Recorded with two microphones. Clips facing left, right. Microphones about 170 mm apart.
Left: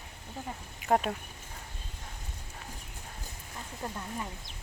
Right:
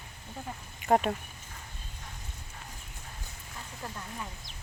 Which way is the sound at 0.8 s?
Centre (ahead or behind).